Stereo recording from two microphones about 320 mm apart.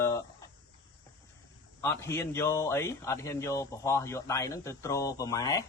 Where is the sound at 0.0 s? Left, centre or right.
Centre.